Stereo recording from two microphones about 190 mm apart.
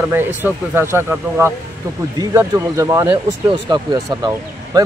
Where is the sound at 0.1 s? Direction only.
10° right (ahead or behind).